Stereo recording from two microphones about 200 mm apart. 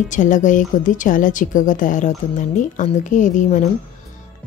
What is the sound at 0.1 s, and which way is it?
A woman's voice, 40° left (ahead or behind).